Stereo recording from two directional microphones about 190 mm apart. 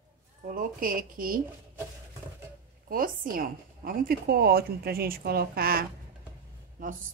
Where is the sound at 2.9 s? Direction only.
50° right (ahead or behind).